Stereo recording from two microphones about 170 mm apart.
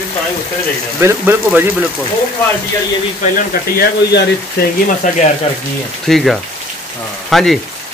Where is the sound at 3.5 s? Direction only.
60° left (ahead or behind).